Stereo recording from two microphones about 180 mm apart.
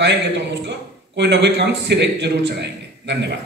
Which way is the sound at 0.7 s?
75° right (ahead or behind).